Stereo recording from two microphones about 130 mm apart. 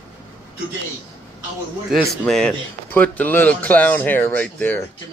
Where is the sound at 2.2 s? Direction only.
5° left (ahead or behind).